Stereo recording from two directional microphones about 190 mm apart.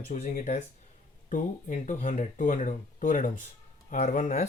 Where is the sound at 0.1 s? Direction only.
45° left (ahead or behind).